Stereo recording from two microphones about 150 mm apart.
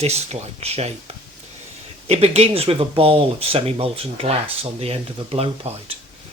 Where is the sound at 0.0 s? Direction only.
45° right (ahead or behind).